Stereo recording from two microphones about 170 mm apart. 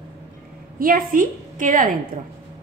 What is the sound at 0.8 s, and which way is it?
Speech, 55° right (ahead or behind).